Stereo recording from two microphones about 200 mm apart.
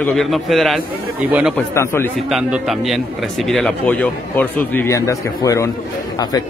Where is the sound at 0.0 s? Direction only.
Centre (ahead or behind).